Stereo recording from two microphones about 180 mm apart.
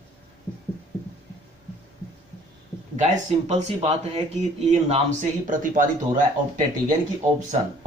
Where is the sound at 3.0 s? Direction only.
40° right (ahead or behind).